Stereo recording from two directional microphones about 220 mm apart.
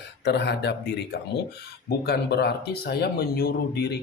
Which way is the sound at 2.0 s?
50° left (ahead or behind).